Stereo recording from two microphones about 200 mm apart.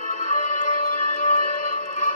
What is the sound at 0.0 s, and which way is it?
Music, 40° left (ahead or behind).